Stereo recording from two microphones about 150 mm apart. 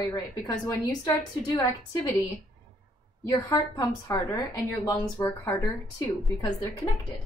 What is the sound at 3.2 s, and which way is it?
Speech, 25° left (ahead or behind).